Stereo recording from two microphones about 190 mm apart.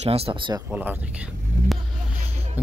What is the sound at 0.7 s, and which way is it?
Speech, 5° right (ahead or behind).